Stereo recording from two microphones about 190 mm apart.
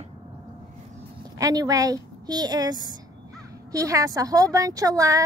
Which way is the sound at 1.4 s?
20° right (ahead or behind).